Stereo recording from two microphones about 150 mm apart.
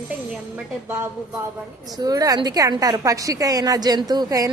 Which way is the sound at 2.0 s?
25° right (ahead or behind).